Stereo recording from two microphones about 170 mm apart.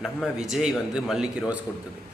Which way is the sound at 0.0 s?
Centre (ahead or behind).